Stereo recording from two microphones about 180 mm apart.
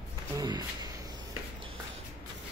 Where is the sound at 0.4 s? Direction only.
25° right (ahead or behind).